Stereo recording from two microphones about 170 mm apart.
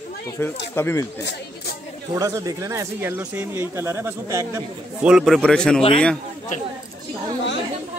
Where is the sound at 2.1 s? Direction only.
20° right (ahead or behind).